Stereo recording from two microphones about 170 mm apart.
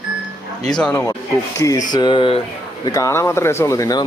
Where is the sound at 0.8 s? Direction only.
10° left (ahead or behind); by 2.4 s 30° left (ahead or behind).